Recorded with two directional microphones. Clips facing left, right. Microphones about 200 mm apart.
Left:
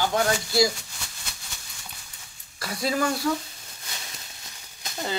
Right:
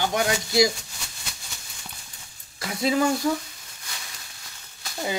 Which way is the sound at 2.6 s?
20° right (ahead or behind).